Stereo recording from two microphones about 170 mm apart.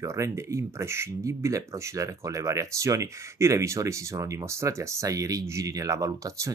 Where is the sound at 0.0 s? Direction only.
15° right (ahead or behind).